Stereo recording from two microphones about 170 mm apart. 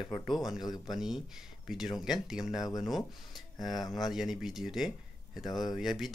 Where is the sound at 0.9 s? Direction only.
Centre (ahead or behind).